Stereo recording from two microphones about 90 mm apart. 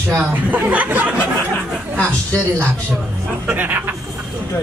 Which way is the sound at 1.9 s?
15° left (ahead or behind).